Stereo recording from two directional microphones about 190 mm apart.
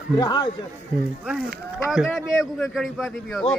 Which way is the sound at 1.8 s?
Centre (ahead or behind).